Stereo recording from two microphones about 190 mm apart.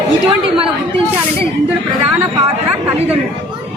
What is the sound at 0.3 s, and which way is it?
Speech, 30° right (ahead or behind).